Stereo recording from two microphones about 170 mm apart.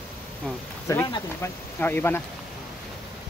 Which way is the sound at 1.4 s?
15° left (ahead or behind).